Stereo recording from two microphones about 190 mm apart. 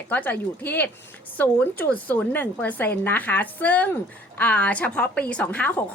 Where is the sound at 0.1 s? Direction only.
10° left (ahead or behind).